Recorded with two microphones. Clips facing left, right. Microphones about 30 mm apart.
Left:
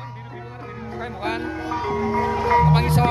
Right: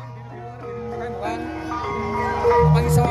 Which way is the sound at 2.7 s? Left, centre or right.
Left.